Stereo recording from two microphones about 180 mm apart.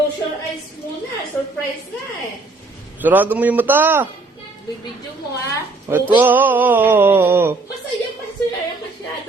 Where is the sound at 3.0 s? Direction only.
10° right (ahead or behind).